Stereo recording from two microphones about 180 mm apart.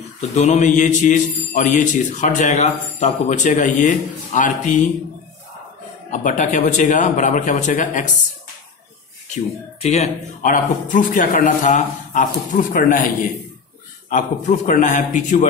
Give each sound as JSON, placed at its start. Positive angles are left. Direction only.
{"t": 0.3, "sound": "a man's voice", "side_deg": 40}
{"t": 6.0, "sound": "a man's voice", "side_deg": 45}
{"t": 9.3, "sound": "a man's voice", "side_deg": 40}